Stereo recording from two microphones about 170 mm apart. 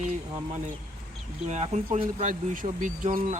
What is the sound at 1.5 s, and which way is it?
Speech, 45° right (ahead or behind).